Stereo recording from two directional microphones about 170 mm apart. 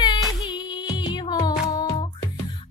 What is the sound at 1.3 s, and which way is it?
Music, 25° left (ahead or behind).